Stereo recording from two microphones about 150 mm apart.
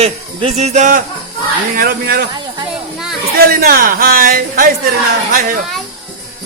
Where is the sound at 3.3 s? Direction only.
85° right.